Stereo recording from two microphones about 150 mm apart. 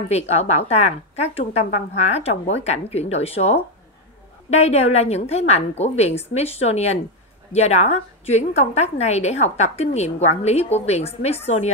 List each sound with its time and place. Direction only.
0.1 s a woman's voice: 45° left (ahead or behind)